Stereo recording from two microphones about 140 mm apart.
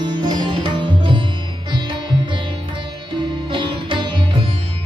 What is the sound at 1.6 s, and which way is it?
Sitar, 35° right (ahead or behind).